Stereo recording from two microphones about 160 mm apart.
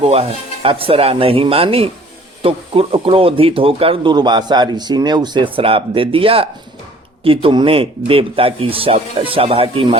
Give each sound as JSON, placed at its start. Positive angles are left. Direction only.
{"t": 0.0, "sound": "speech", "side_deg": -40}